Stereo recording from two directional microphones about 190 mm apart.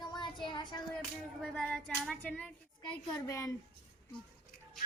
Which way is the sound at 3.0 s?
15° left (ahead or behind).